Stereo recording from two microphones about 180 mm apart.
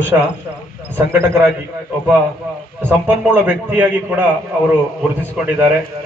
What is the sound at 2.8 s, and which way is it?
A man's voice, 10° right (ahead or behind).